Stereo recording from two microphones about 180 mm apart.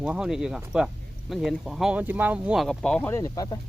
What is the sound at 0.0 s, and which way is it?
Speech, 5° right (ahead or behind).